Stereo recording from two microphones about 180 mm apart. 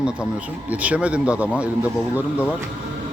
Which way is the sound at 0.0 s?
5° right (ahead or behind).